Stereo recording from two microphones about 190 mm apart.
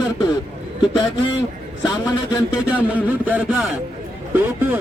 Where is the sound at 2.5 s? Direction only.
5° right (ahead or behind).